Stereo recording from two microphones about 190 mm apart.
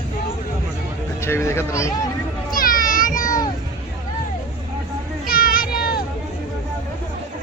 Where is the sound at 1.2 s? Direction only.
15° left (ahead or behind).